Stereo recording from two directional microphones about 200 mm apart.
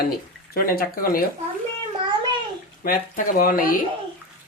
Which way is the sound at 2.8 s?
45° left (ahead or behind).